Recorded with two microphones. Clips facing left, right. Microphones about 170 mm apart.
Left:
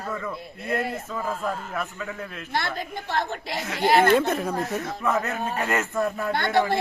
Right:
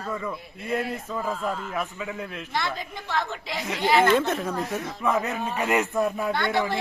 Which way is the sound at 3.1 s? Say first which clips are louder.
Left 1 dB; 55° left (ahead or behind).